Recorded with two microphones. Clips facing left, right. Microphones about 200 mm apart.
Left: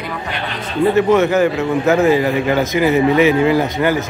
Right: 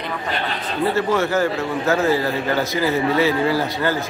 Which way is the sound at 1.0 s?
20° left (ahead or behind).